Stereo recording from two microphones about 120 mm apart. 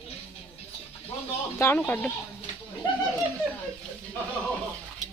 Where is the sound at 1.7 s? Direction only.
15° left (ahead or behind).